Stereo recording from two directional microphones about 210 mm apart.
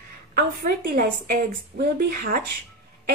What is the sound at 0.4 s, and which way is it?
A woman's voice, 45° right (ahead or behind).